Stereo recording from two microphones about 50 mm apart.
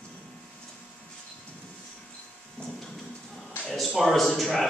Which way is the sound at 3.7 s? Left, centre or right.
Centre.